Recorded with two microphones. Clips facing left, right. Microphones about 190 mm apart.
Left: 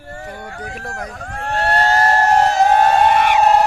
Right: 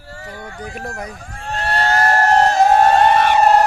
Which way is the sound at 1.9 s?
25° left (ahead or behind).